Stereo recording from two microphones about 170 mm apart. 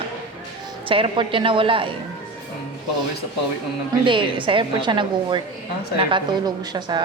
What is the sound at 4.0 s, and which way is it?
Speech, 30° right (ahead or behind).